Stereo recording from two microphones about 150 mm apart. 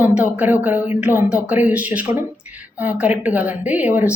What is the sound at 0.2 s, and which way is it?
A woman's voice, 10° right (ahead or behind).